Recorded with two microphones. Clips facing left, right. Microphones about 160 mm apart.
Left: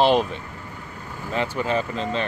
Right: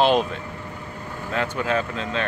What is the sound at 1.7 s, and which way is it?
Speech, 15° left (ahead or behind).